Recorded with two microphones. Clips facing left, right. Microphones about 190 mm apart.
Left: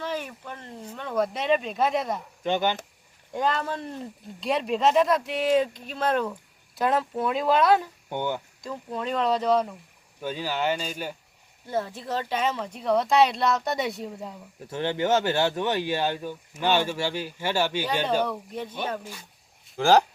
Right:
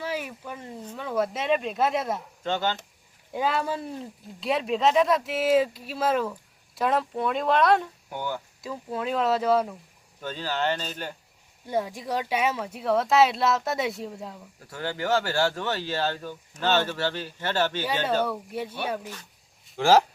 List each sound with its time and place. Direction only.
0.0 s a sound: 10° right (ahead or behind)
0.9 s speech: 5° right (ahead or behind)
2.4 s speech: 15° left (ahead or behind)
3.3 s speech: 5° right (ahead or behind)
8.1 s speech: 20° left (ahead or behind)
8.6 s speech: 5° right (ahead or behind)
10.2 s speech: 10° left (ahead or behind)
11.7 s speech: 15° right (ahead or behind)
14.6 s speech: 20° left (ahead or behind)
18.3 s speech: 10° right (ahead or behind)